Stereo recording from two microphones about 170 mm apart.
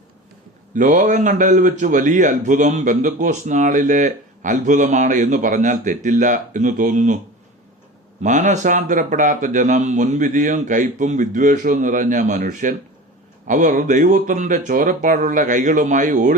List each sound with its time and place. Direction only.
0.7 s a man's voice: 50° right (ahead or behind)
8.2 s a man's voice: 45° right (ahead or behind)